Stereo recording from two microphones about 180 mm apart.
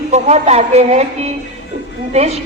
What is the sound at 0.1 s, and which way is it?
A woman's voice, 40° right (ahead or behind).